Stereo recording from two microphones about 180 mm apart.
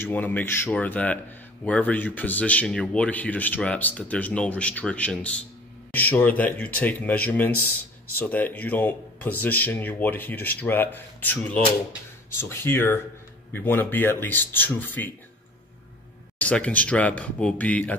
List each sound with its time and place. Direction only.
0.0 s speech: 10° left (ahead or behind)
16.3 s speech: 5° left (ahead or behind)